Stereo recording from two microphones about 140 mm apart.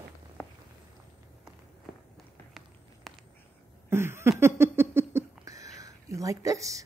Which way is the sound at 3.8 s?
15° right (ahead or behind).